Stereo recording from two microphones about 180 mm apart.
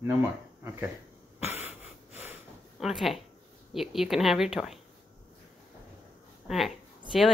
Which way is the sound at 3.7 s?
Centre (ahead or behind).